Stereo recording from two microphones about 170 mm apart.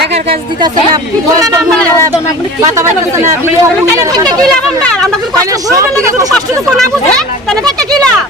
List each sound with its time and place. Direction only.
0.1 s speech: 35° right (ahead or behind)
2.6 s speech: 15° right (ahead or behind)
4.4 s speech: 5° left (ahead or behind)
5.6 s speech: 15° right (ahead or behind)
6.3 s speech: 5° left (ahead or behind)